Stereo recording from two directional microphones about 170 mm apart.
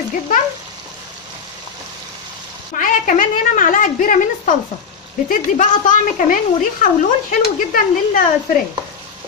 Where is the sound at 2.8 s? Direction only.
50° left (ahead or behind).